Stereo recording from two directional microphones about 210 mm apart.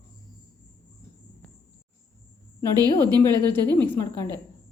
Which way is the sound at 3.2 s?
10° left (ahead or behind).